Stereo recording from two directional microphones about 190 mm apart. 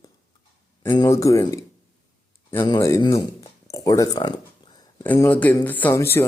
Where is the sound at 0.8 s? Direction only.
20° left (ahead or behind).